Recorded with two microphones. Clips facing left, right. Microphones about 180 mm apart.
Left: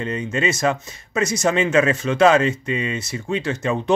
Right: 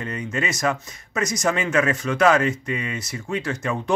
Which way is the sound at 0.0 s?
25° left (ahead or behind).